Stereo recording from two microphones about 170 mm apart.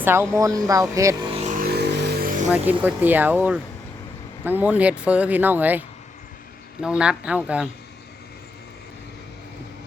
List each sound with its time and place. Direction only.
0.0 s speech: 15° right (ahead or behind)
1.4 s vehicle: 45° right (ahead or behind)
1.6 s vehicle: 75° right (ahead or behind)
2.5 s speech: 10° right (ahead or behind)
6.8 s speech: 5° right (ahead or behind)